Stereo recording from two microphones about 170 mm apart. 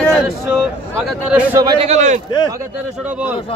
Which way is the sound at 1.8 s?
45° right (ahead or behind).